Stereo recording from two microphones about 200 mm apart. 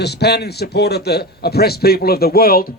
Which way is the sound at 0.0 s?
55° left (ahead or behind).